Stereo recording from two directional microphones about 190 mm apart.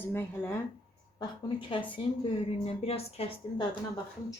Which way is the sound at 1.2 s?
25° left (ahead or behind).